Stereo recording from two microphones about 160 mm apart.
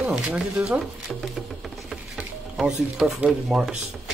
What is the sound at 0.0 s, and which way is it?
Speech, 5° right (ahead or behind).